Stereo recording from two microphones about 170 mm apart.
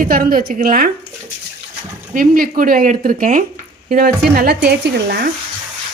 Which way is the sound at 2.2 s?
55° right (ahead or behind).